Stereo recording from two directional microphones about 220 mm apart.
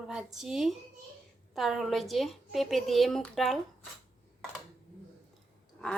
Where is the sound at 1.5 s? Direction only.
Centre (ahead or behind).